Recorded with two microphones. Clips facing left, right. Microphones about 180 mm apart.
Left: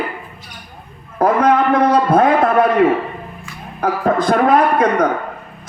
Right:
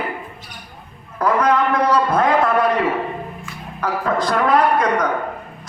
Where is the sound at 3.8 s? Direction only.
55° left (ahead or behind).